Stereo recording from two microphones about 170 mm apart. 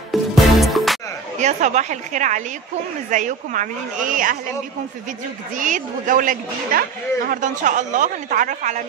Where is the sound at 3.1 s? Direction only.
45° right (ahead or behind).